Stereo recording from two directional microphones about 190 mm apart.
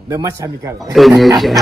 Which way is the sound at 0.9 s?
Centre (ahead or behind).